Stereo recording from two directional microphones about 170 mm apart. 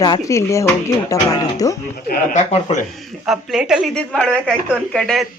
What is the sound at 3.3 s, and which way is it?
Speech, centre (ahead or behind).